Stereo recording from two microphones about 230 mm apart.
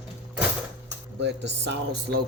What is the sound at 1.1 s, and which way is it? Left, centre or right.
Speech, right.